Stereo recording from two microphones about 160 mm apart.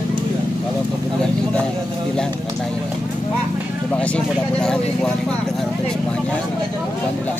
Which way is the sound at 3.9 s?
10° left (ahead or behind).